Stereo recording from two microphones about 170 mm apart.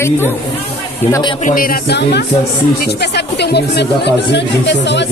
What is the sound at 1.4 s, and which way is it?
A woman's voice, 55° left (ahead or behind).